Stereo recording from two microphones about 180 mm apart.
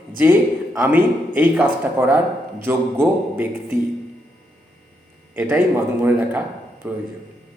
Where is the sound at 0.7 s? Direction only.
10° right (ahead or behind).